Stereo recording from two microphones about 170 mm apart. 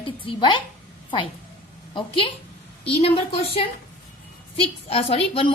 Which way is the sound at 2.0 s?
30° left (ahead or behind).